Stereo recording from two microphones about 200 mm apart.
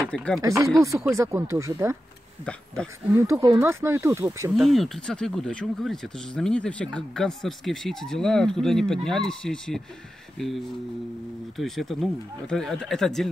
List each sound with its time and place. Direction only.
0.1 s speech: 5° left (ahead or behind)
0.4 s speech: 15° right (ahead or behind)
2.4 s speech: 5° left (ahead or behind)
3.1 s speech: 15° right (ahead or behind)
4.6 s speech: centre (ahead or behind)
11.5 s speech: centre (ahead or behind)